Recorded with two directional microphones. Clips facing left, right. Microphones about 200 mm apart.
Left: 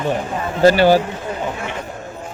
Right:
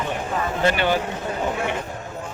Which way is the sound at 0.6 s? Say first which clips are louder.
Left 10 dB; 35° left (ahead or behind).